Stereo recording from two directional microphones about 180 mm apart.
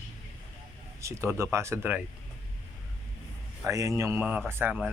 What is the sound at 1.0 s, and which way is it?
Speech, 15° right (ahead or behind).